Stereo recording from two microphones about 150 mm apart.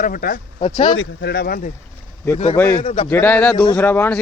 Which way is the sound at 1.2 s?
90° left.